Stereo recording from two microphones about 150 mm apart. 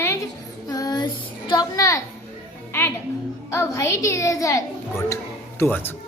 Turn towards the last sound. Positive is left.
turn(degrees=15)  # may be behind; listen again after turning